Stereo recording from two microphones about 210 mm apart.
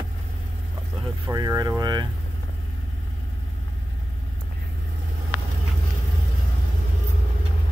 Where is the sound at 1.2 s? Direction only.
15° right (ahead or behind).